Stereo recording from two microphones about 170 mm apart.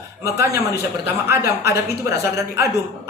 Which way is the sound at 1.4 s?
70° left (ahead or behind).